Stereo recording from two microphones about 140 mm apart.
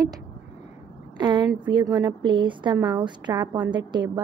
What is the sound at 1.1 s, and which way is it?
A woman's voice, 30° right (ahead or behind).